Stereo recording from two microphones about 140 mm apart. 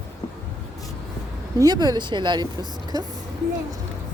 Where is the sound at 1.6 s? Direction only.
30° right (ahead or behind).